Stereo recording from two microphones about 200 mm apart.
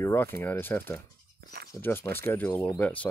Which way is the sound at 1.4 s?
50° right (ahead or behind).